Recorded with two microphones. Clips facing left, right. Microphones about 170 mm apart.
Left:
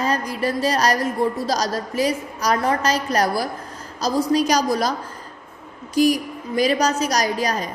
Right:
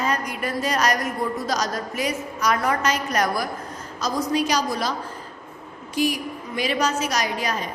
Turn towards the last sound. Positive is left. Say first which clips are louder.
# left 4 dB
turn(degrees=40)  # may be behind; listen again after turning